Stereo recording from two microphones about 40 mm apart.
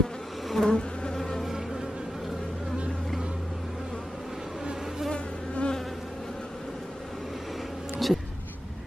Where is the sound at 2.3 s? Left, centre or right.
Centre.